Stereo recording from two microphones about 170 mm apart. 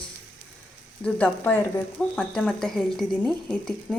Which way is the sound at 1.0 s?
10° left (ahead or behind).